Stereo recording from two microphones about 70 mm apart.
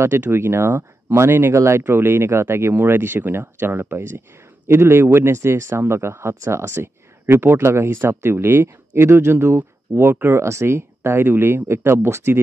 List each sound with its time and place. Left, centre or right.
0.0 s speech: right
1.8 s speech: right